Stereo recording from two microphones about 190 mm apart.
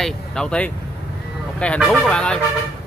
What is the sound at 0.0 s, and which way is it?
Speech, 5° left (ahead or behind).